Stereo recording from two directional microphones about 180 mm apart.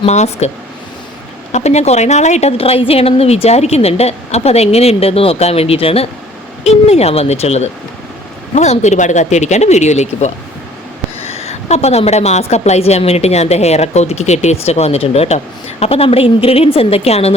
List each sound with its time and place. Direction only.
0.0 s a woman's voice: 40° left (ahead or behind)
1.5 s a woman's voice: 35° left (ahead or behind)